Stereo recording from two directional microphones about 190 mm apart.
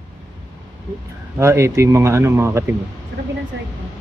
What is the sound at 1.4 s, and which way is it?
Speech, 15° right (ahead or behind).